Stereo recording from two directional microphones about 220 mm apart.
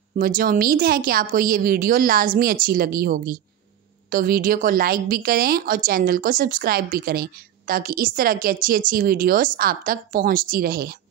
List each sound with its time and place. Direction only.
0.1 s a woman's voice: 40° right (ahead or behind)